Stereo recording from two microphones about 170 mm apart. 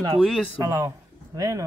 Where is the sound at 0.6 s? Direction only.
15° right (ahead or behind).